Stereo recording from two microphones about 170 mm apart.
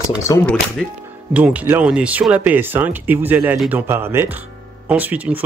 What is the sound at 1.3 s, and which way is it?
Speech, 10° right (ahead or behind).